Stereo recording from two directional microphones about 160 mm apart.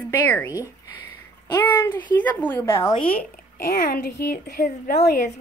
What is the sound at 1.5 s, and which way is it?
Speech, 15° left (ahead or behind).